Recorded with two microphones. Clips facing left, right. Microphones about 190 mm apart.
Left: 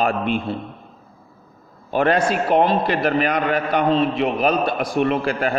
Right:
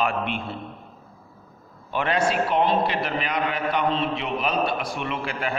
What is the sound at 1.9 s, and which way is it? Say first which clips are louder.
A man's voice: left 5 dB; 45° left (ahead or behind).